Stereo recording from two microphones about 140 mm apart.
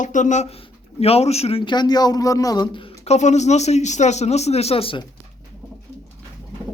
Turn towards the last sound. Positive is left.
turn(degrees=40)  # may be behind; listen again after turning